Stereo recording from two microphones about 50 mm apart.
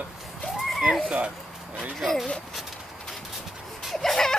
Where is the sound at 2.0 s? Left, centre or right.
Centre.